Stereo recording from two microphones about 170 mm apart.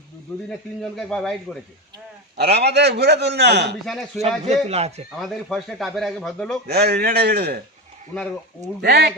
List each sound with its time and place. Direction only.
0.9 s a man's voice: centre (ahead or behind)
2.4 s a man's voice: 75° right (ahead or behind)
3.8 s a man's voice: centre (ahead or behind)
4.4 s speech: 40° right (ahead or behind)
5.2 s a man's voice: centre (ahead or behind)
6.7 s a man's voice: 70° right (ahead or behind)
8.8 s a man's voice: 75° right (ahead or behind)